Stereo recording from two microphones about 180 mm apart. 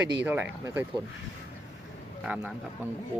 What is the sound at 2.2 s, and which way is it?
Speech, 5° right (ahead or behind).